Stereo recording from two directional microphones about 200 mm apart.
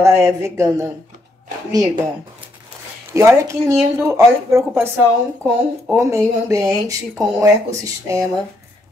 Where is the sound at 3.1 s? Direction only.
15° right (ahead or behind).